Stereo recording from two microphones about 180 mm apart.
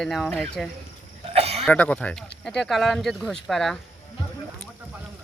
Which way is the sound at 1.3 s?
35° right (ahead or behind).